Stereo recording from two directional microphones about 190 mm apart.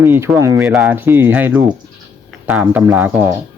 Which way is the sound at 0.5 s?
Centre (ahead or behind).